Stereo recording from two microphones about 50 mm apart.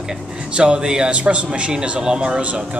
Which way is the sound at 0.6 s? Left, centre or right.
Right.